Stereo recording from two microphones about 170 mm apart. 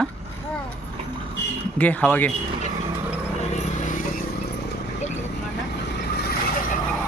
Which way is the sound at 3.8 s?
50° left (ahead or behind).